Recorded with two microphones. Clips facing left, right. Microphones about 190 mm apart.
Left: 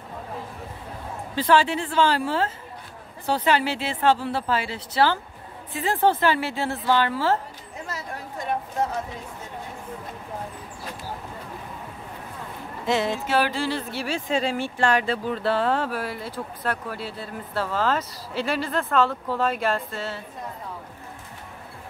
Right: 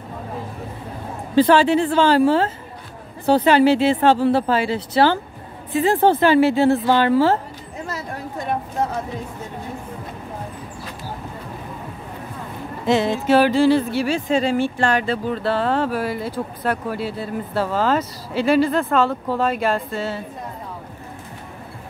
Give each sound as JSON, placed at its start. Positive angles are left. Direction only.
{"t": 1.3, "sound": "speech", "side_deg": -25}
{"t": 12.8, "sound": "speech", "side_deg": -25}
{"t": 13.9, "sound": "speech", "side_deg": 0}